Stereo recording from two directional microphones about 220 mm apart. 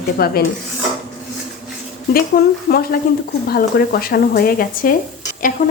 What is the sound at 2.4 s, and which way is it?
Speech, 45° left (ahead or behind).